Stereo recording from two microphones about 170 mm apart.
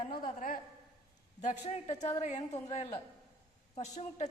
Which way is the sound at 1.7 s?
35° left (ahead or behind).